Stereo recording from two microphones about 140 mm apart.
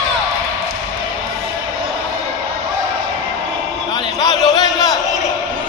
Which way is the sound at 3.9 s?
30° left (ahead or behind).